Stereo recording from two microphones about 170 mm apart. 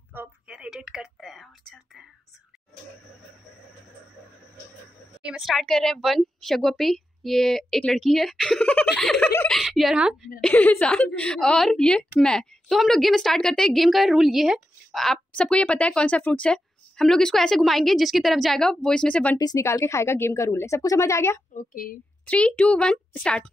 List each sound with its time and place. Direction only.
0.1 s a sound: 10° right (ahead or behind)
5.2 s a woman's voice: centre (ahead or behind)
10.4 s a woman's voice: 10° left (ahead or behind)
19.3 s a woman's voice: 20° left (ahead or behind)
21.5 s a woman's voice: 55° left (ahead or behind)
22.2 s a woman's voice: 5° left (ahead or behind)